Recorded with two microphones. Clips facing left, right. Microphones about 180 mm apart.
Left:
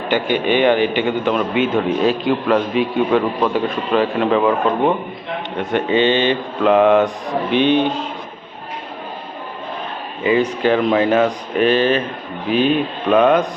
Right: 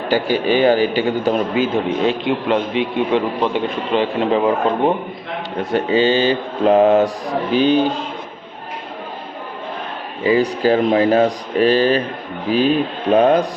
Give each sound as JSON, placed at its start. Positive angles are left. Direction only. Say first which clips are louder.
{"t": 0.1, "sound": "a man's voice", "louder": "right 1 dB", "side_deg": -35}
{"t": 10.2, "sound": "a man's voice", "louder": "right 1 dB", "side_deg": -35}